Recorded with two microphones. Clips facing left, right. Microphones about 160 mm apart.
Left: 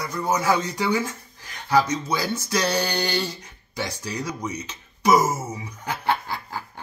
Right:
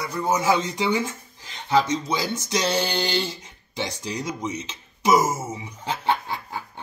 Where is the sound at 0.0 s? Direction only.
25° right (ahead or behind).